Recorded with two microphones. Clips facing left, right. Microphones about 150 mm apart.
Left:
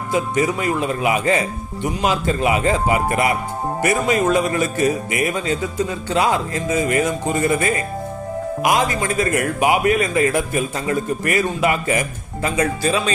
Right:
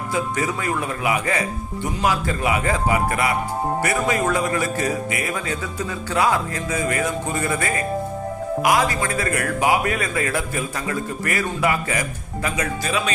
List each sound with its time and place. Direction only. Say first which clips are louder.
0.1 s a man's voice: left 5 dB; 20° left (ahead or behind)